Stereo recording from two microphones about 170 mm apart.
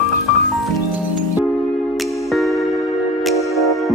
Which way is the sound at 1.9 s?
Centre (ahead or behind).